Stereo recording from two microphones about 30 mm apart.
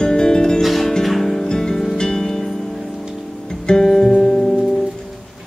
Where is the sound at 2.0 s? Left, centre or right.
Left.